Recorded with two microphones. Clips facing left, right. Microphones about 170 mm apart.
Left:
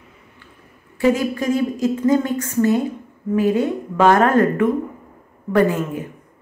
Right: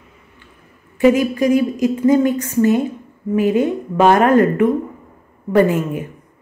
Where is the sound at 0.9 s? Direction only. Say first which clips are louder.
Right 4 dB; 15° right (ahead or behind).